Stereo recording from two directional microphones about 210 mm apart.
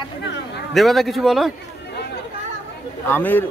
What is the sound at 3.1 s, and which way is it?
Speech, 10° left (ahead or behind).